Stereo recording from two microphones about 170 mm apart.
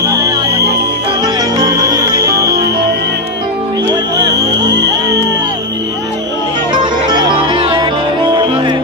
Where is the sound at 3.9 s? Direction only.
20° right (ahead or behind).